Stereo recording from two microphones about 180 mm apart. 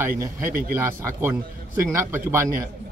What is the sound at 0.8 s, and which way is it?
A man's voice, 15° right (ahead or behind).